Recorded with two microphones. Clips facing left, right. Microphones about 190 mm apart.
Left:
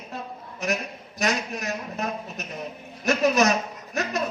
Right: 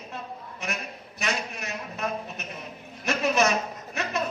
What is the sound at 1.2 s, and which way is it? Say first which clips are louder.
A man's voice: left 5 dB; 40° left (ahead or behind).